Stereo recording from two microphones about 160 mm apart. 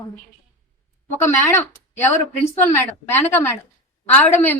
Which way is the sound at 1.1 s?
15° left (ahead or behind).